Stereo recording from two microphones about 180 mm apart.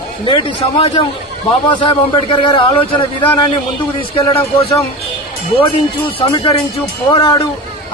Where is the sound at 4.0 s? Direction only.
30° left (ahead or behind).